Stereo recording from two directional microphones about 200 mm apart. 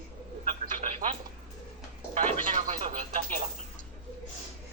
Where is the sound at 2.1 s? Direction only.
35° right (ahead or behind).